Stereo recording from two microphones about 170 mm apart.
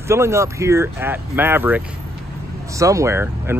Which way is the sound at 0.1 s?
15° right (ahead or behind).